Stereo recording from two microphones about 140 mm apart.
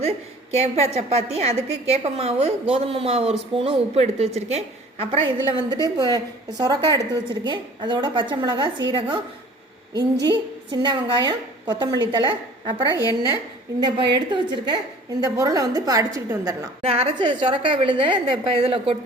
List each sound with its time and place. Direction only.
0.5 s a woman's voice: 50° right (ahead or behind)
5.2 s a woman's voice: 30° right (ahead or behind)
12.9 s a woman's voice: 25° left (ahead or behind)
13.7 s a woman's voice: 30° right (ahead or behind)
16.8 s a woman's voice: 40° right (ahead or behind)